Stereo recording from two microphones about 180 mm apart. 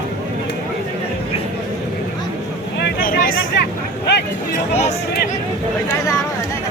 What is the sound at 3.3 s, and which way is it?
Vehicle, 70° left (ahead or behind).